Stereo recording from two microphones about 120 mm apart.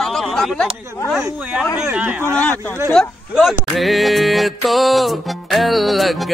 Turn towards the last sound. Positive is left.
turn(degrees=0)  # may be behind; listen again after turning